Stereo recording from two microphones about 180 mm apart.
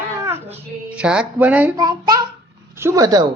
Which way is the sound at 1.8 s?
20° right (ahead or behind).